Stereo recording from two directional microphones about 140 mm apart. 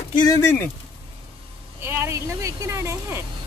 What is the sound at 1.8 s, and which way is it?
Speech, 20° right (ahead or behind).